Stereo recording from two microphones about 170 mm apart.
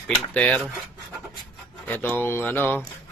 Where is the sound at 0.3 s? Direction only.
5° left (ahead or behind).